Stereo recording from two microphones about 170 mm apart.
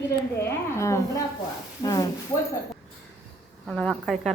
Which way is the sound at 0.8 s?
15° left (ahead or behind).